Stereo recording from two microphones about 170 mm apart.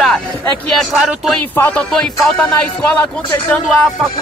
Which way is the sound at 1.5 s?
15° left (ahead or behind).